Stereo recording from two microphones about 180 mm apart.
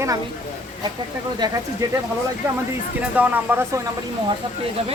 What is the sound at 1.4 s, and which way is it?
Speech, 25° right (ahead or behind).